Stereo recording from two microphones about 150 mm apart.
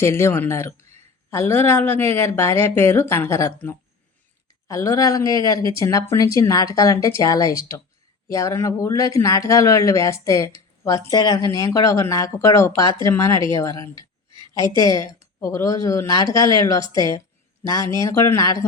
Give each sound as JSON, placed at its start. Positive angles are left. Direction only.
{"t": 0.0, "sound": "a woman's voice", "side_deg": 15}